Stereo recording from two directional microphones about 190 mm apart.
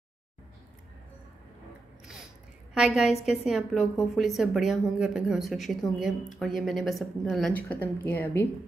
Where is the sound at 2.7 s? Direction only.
Centre (ahead or behind).